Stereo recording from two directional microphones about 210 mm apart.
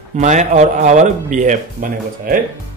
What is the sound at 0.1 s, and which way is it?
A man's voice, 35° right (ahead or behind).